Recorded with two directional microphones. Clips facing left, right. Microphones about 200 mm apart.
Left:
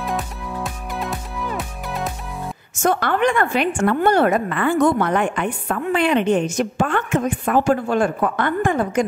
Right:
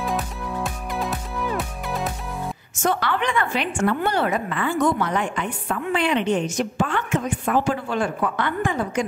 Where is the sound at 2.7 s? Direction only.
50° left (ahead or behind).